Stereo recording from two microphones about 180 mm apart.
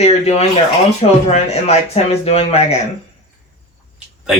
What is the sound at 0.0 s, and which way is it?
Speech, 35° left (ahead or behind).